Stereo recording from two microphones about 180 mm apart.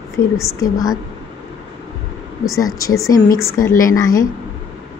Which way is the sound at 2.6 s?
20° left (ahead or behind).